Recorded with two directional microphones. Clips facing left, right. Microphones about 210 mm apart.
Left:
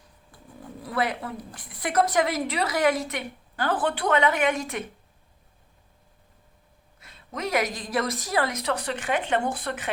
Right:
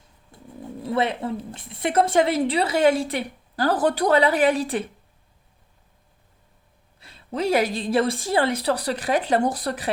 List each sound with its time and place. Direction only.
0.3 s speech: 25° right (ahead or behind)
7.0 s a woman's voice: 30° right (ahead or behind)